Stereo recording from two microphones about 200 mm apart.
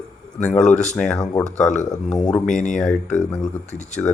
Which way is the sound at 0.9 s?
5° left (ahead or behind).